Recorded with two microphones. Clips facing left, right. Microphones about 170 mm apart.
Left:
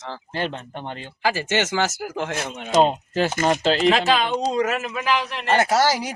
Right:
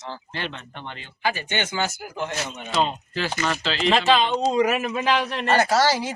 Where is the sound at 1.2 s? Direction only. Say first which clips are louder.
Left 4 dB; 90° left.